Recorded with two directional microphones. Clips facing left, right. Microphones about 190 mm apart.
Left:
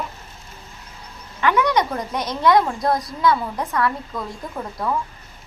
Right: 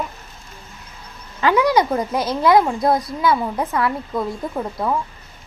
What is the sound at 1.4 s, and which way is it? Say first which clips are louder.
A woman's voice: right 3 dB; 30° right (ahead or behind).